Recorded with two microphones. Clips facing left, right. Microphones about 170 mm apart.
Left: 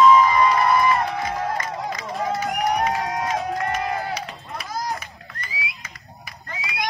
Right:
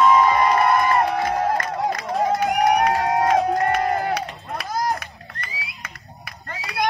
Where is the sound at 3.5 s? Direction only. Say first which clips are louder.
Right 5 dB; 55° right (ahead or behind).